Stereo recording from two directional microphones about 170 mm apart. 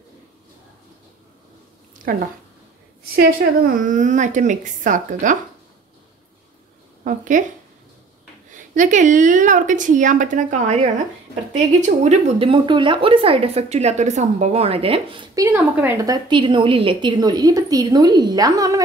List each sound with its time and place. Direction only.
2.1 s a woman's voice: 55° right (ahead or behind)
7.1 s a woman's voice: 50° right (ahead or behind)
8.5 s a woman's voice: 50° right (ahead or behind); by 15.2 s 30° right (ahead or behind)
15.3 s a woman's voice: 15° right (ahead or behind)